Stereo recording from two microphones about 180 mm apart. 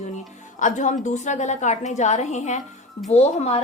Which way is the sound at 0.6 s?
45° left (ahead or behind).